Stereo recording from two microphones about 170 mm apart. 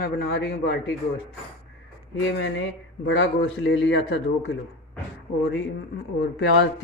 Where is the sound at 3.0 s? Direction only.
90° left.